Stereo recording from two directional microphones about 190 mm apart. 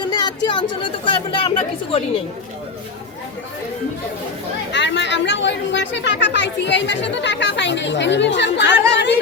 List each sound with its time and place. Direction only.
0.0 s speech: 25° left (ahead or behind)
4.7 s speech: 70° left (ahead or behind)